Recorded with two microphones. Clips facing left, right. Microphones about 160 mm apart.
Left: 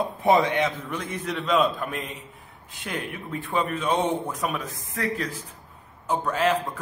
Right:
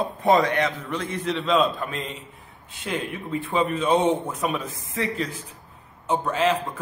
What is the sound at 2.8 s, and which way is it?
A man's voice, 5° right (ahead or behind).